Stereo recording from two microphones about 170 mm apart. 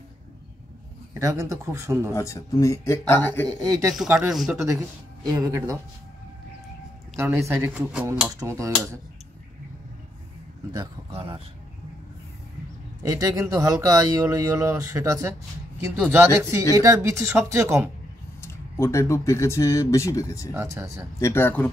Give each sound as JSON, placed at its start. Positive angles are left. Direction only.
{"t": 1.2, "sound": "speech", "side_deg": -20}
{"t": 2.1, "sound": "speech", "side_deg": 20}
{"t": 3.9, "sound": "speech", "side_deg": -5}
{"t": 5.2, "sound": "speech", "side_deg": -20}
{"t": 7.2, "sound": "speech", "side_deg": -15}
{"t": 11.1, "sound": "speech", "side_deg": -35}
{"t": 13.0, "sound": "speech", "side_deg": -20}
{"t": 18.4, "sound": "speech", "side_deg": 15}
{"t": 20.5, "sound": "speech", "side_deg": -15}
{"t": 21.2, "sound": "speech", "side_deg": 15}